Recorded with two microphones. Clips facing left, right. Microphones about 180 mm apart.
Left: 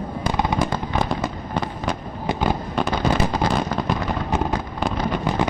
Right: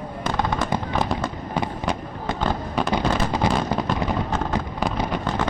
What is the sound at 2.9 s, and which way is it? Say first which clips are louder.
Fireworks: left 2 dB; 20° right (ahead or behind).